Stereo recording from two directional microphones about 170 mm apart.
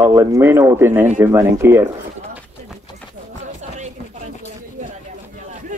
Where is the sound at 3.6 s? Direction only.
45° right (ahead or behind).